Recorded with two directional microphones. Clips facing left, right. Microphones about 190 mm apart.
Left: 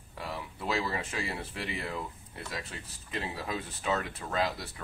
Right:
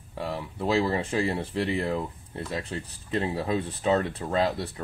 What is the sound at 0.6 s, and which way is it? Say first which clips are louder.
Speech: right 8 dB; 30° right (ahead or behind).